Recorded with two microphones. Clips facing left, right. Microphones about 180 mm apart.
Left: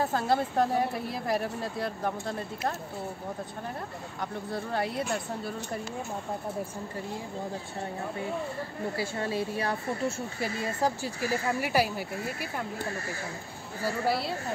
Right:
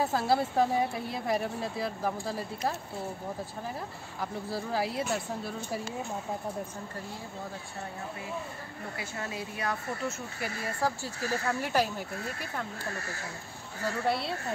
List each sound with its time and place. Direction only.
0.0 s speech: 5° right (ahead or behind)
4.2 s speech: 5° right (ahead or behind)
8.9 s speech: 30° left (ahead or behind)
10.8 s speech: 15° left (ahead or behind)
13.8 s speech: 5° left (ahead or behind)